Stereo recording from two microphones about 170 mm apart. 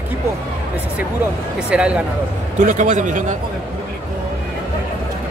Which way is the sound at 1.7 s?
5° right (ahead or behind).